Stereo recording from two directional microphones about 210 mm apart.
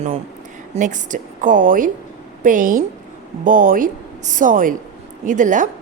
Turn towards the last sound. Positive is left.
turn(degrees=-35)  # may be behind; listen again after turning